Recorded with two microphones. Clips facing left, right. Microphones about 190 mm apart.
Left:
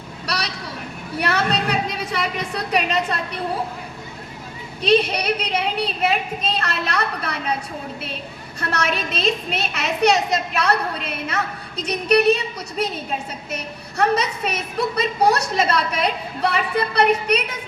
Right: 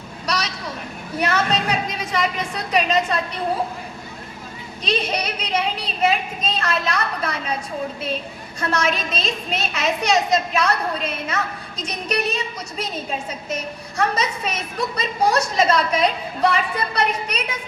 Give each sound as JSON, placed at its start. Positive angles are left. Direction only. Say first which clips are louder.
{"t": 0.3, "sound": "a sound", "louder": "right 2 dB", "side_deg": 60}
{"t": 1.2, "sound": "a woman's voice", "louder": "even", "side_deg": 60}
{"t": 4.8, "sound": "a woman's voice", "louder": "left 6 dB", "side_deg": 60}
{"t": 8.7, "sound": "a woman's voice", "louder": "right 1 dB", "side_deg": 60}